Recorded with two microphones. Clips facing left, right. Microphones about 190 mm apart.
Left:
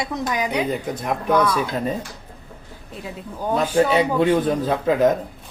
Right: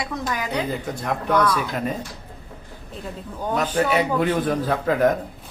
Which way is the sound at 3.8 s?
25° left (ahead or behind).